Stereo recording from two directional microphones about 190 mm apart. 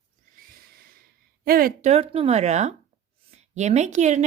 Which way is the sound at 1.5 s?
50° right (ahead or behind).